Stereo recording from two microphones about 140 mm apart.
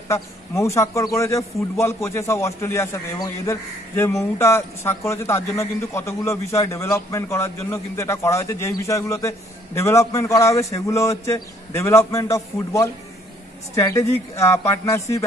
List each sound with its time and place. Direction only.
0.1 s a man's voice: 20° left (ahead or behind)